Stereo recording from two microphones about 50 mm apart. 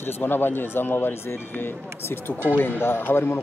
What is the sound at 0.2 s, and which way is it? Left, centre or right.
Speech, left.